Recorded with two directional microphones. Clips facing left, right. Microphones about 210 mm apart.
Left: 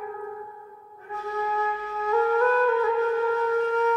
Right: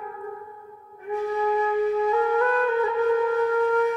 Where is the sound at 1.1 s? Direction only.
15° right (ahead or behind).